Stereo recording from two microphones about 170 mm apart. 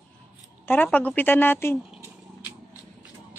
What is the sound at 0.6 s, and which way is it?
Speech, 10° left (ahead or behind).